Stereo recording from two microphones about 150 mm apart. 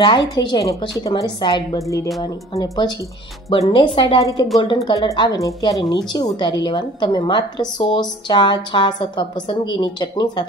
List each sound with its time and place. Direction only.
0.0 s a woman's voice: 30° left (ahead or behind)